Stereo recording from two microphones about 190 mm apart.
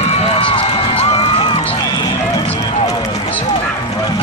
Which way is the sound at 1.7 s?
20° left (ahead or behind).